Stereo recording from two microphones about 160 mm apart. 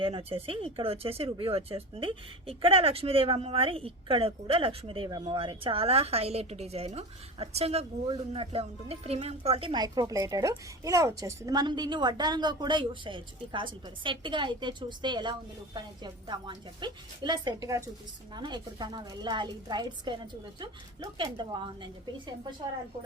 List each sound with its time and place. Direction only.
0.0 s speech: 35° right (ahead or behind)